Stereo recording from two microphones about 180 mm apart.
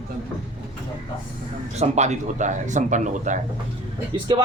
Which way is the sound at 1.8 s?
40° right (ahead or behind).